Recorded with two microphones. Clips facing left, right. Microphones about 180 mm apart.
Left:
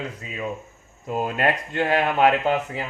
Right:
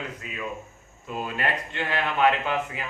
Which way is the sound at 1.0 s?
45° left (ahead or behind).